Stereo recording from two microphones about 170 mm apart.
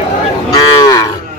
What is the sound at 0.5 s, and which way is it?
Cattle, 20° left (ahead or behind).